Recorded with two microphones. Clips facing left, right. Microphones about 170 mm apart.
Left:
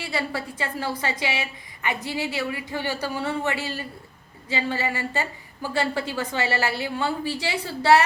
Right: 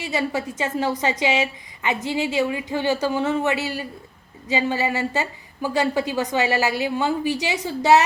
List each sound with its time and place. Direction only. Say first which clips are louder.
0.0 s a woman's voice: right 4 dB; 15° right (ahead or behind)